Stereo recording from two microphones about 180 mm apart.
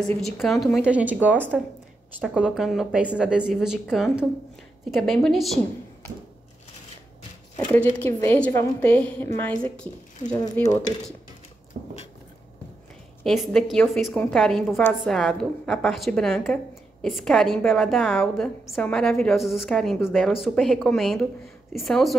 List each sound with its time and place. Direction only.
0.2 s a woman's voice: centre (ahead or behind)
7.5 s a woman's voice: 10° left (ahead or behind)
11.7 s a sound: 45° right (ahead or behind)
13.2 s a woman's voice: centre (ahead or behind)